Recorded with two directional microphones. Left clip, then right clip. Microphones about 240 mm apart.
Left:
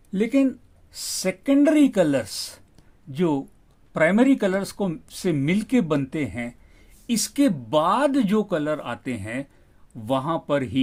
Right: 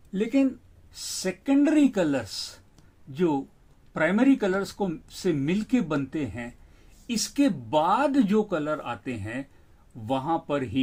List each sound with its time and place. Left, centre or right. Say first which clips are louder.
0.1 s speech: left 3 dB; left